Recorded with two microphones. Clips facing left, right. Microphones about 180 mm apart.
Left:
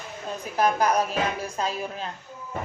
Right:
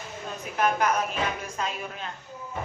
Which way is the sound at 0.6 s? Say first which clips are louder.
Left 2 dB; 35° left (ahead or behind).